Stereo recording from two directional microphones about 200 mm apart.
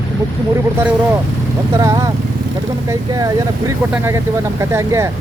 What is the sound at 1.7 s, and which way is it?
Speech, 15° right (ahead or behind).